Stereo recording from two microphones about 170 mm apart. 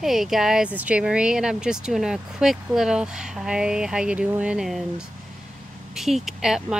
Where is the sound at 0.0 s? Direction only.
Centre (ahead or behind).